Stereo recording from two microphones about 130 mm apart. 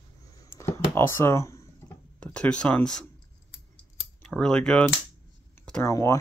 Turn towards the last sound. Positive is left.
turn(degrees=25)  # may be behind; listen again after turning